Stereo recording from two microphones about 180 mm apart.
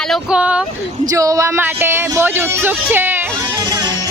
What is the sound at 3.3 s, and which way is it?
Music, 20° right (ahead or behind).